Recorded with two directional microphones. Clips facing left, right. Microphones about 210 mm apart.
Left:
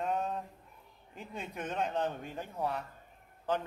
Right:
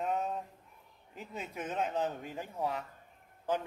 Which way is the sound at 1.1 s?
5° right (ahead or behind).